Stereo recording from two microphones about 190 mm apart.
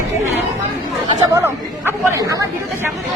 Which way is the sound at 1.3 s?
15° right (ahead or behind).